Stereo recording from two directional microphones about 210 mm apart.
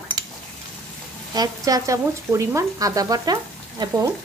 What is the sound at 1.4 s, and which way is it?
A woman's voice, 15° right (ahead or behind).